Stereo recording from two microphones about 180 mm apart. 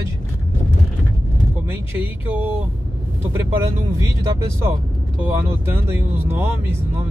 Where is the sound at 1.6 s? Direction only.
10° right (ahead or behind).